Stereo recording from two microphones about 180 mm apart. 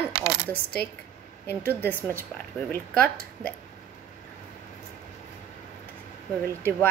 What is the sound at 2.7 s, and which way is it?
Speech, 5° left (ahead or behind).